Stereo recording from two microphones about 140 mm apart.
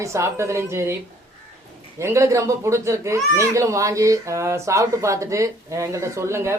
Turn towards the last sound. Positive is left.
turn(degrees=-20)  # may be behind; listen again after turning